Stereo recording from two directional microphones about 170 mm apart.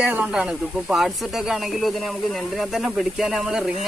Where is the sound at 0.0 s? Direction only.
10° right (ahead or behind).